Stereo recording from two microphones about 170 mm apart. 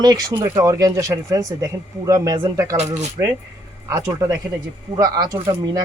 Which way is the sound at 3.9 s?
20° right (ahead or behind).